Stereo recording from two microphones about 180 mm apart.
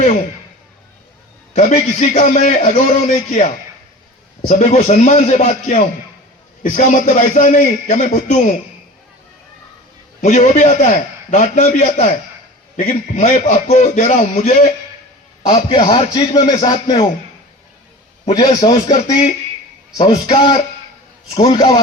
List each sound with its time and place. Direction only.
1.5 s a man's voice: 35° left (ahead or behind)
4.4 s a man's voice: 40° left (ahead or behind)
10.2 s a man's voice: 40° left (ahead or behind)
15.4 s a man's voice: 35° left (ahead or behind)
18.3 s a man's voice: 25° left (ahead or behind)